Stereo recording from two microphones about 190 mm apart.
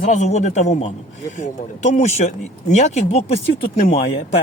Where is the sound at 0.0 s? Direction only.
40° left (ahead or behind).